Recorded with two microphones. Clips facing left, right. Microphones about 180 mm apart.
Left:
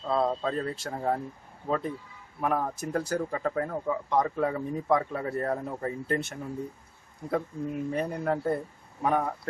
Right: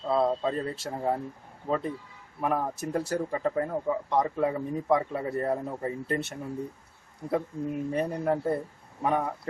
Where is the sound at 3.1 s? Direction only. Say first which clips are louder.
Right 2 dB; 25° right (ahead or behind).